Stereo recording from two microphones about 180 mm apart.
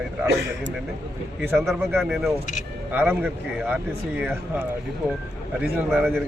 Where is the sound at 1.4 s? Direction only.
10° right (ahead or behind).